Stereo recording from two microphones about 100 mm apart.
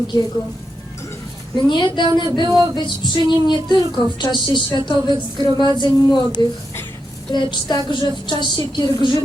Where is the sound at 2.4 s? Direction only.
45° right (ahead or behind).